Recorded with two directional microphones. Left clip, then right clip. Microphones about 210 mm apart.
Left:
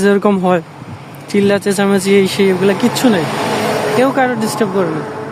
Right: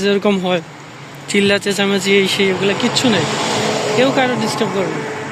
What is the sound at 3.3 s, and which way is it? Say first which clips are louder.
Vehicle: left 1 dB; 45° left (ahead or behind).